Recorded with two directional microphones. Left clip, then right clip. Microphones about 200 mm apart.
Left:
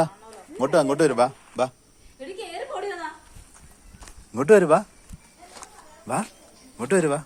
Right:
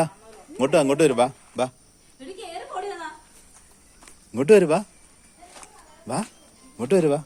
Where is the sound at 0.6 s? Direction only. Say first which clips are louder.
Right 1 dB; 30° right (ahead or behind).